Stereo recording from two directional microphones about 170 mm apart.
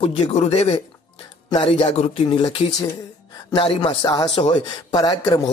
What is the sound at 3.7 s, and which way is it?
Speech, 30° left (ahead or behind).